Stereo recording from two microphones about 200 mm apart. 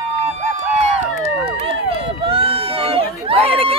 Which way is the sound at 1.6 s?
25° right (ahead or behind).